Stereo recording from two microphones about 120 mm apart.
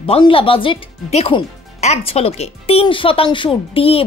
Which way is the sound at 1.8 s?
60° left (ahead or behind).